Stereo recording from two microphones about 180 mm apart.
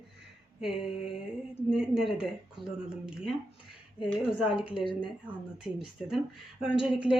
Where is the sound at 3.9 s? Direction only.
30° left (ahead or behind).